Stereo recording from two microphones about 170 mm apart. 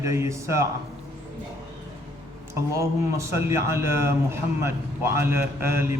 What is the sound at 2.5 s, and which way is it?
A man's voice, 20° right (ahead or behind).